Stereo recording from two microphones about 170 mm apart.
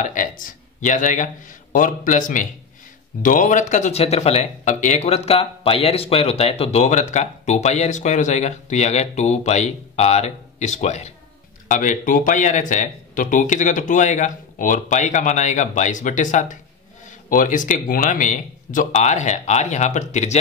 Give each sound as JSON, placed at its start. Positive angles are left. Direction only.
{"t": 0.0, "sound": "speech", "side_deg": 50}